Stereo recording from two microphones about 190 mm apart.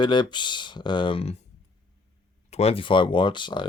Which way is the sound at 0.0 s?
25° left (ahead or behind).